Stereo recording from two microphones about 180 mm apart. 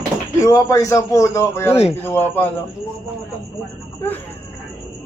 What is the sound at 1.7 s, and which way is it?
Speech, 35° left (ahead or behind).